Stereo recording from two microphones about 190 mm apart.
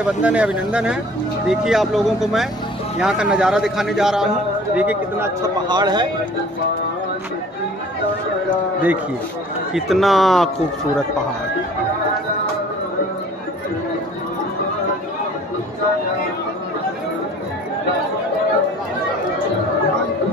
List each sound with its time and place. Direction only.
0.0 s a man's voice: 5° right (ahead or behind)
5.7 s speech: 20° right (ahead or behind)
8.5 s a man's voice: 10° right (ahead or behind)